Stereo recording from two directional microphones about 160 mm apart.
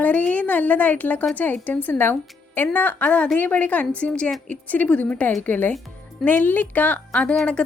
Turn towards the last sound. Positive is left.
turn(degrees=5)  # may be behind; listen again after turning